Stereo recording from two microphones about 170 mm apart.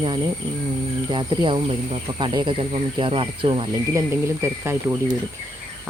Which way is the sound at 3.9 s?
15° right (ahead or behind).